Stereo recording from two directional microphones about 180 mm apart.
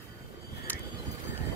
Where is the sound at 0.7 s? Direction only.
10° left (ahead or behind).